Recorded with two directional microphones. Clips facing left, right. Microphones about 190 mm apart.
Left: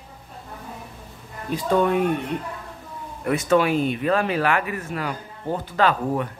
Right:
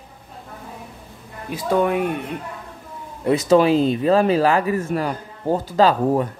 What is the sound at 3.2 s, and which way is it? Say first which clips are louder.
Speech: right 4 dB; 25° right (ahead or behind).